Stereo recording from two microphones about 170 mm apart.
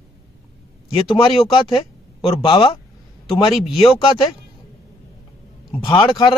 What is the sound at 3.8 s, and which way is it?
Speech, 30° left (ahead or behind).